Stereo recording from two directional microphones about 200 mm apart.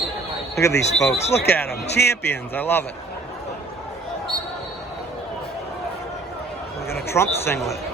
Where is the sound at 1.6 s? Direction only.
55° left (ahead or behind).